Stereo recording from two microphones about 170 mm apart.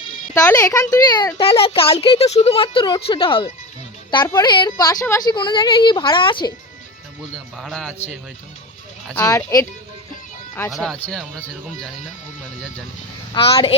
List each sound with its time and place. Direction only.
0.5 s speech: 20° left (ahead or behind)
7.5 s speech: centre (ahead or behind)
9.1 s speech: 20° left (ahead or behind)
10.7 s speech: centre (ahead or behind)
13.3 s speech: 30° left (ahead or behind)